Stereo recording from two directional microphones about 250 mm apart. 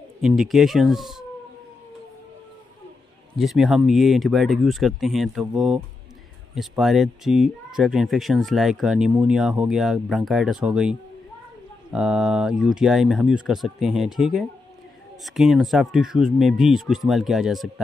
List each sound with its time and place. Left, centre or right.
0.2 s speech: centre
3.3 s speech: centre